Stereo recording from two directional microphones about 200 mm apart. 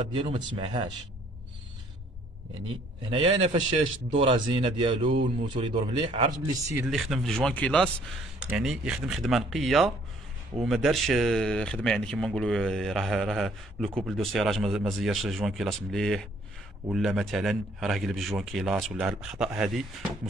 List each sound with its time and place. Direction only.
0.1 s a man's voice: 25° right (ahead or behind)
3.1 s a man's voice: 25° right (ahead or behind)
6.7 s speech: 5° right (ahead or behind)
8.4 s speech: 5° right (ahead or behind)